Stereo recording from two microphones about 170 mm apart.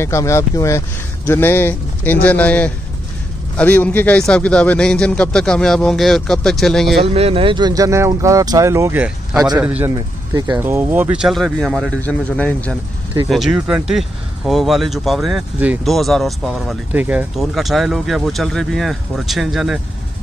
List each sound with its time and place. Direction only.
0.0 s speech: 15° left (ahead or behind)
7.2 s a man's voice: 35° right (ahead or behind); by 9.9 s 10° right (ahead or behind)
9.9 s speech: 25° right (ahead or behind); by 19.8 s centre (ahead or behind)